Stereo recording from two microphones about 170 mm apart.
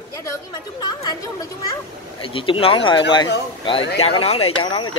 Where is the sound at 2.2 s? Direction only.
30° left (ahead or behind).